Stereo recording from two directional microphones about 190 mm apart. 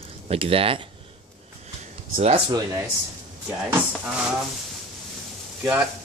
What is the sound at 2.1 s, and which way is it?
Speech, 45° right (ahead or behind).